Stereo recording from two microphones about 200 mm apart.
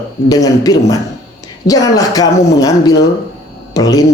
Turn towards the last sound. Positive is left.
turn(degrees=15)  # may be behind; listen again after turning